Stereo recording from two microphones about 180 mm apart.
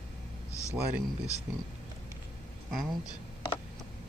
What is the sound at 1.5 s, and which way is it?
Speech, 10° right (ahead or behind).